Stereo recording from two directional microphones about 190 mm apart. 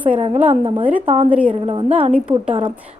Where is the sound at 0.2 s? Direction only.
30° right (ahead or behind).